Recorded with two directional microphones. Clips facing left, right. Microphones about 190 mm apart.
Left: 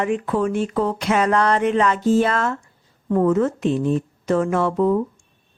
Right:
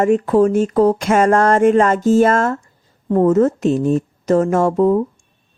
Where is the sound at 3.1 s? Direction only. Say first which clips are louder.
Right 5 dB; 35° right (ahead or behind).